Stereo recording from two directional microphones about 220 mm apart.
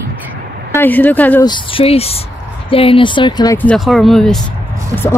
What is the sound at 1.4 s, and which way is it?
Speech, 20° left (ahead or behind).